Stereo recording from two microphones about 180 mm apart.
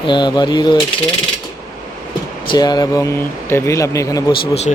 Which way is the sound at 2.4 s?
25° left (ahead or behind).